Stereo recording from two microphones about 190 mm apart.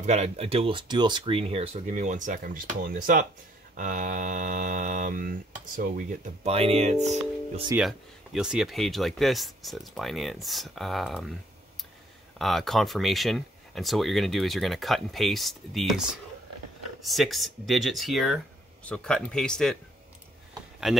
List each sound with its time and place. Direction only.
0.0 s speech: 35° right (ahead or behind)
3.7 s hum: 45° right (ahead or behind)
6.5 s speech: 30° right (ahead or behind)
8.4 s speech: 5° right (ahead or behind)
12.4 s speech: centre (ahead or behind)